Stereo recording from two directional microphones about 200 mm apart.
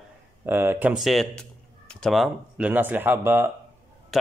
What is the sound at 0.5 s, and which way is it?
Speech, 10° right (ahead or behind).